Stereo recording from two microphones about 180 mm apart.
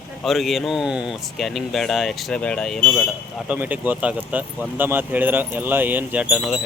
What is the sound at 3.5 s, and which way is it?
Speech, 10° right (ahead or behind).